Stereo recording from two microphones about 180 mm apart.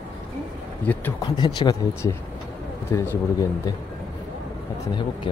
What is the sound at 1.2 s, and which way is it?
Speech, 25° left (ahead or behind).